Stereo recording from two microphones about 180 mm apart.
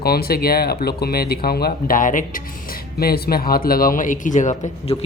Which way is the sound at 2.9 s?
60° left (ahead or behind).